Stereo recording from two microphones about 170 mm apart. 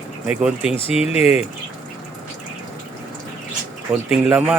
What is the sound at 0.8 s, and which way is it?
Speech, 35° left (ahead or behind).